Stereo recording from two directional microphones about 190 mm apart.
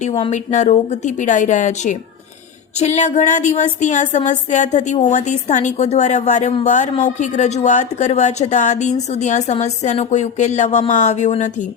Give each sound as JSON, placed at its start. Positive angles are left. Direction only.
{"t": 0.3, "sound": "a woman's voice", "side_deg": 35}